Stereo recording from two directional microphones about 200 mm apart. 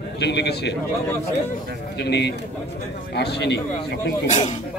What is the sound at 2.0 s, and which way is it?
A man's voice, 60° left (ahead or behind).